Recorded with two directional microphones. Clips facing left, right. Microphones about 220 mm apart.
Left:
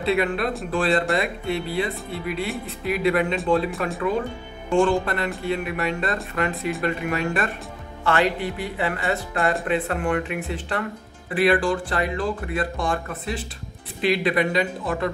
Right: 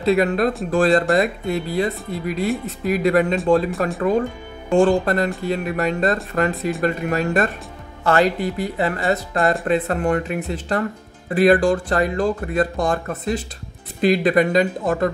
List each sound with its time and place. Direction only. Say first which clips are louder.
0.0 s speech: right 5 dB; 40° right (ahead or behind)